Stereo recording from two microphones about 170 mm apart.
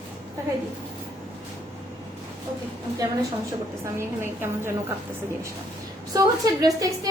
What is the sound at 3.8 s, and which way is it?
A woman's voice, 15° right (ahead or behind).